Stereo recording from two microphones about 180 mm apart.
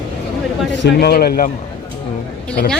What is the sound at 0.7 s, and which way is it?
Speech, 75° left (ahead or behind).